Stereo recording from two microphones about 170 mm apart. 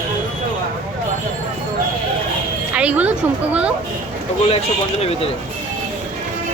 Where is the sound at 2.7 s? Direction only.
10° right (ahead or behind).